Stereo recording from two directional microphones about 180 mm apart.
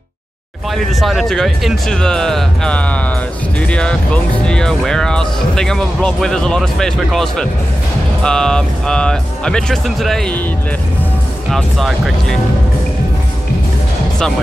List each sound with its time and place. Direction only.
0.7 s speech: centre (ahead or behind)
11.5 s speech: centre (ahead or behind)